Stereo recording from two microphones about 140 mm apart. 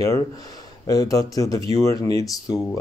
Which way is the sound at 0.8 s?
25° left (ahead or behind).